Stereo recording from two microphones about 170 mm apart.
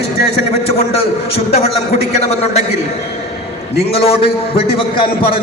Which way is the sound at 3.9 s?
35° left (ahead or behind).